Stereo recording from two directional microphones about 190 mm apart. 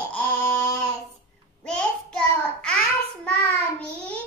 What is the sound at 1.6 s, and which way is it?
Child singing, 5° left (ahead or behind).